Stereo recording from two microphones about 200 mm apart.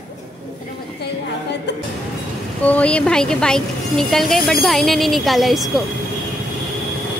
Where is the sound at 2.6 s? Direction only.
5° left (ahead or behind).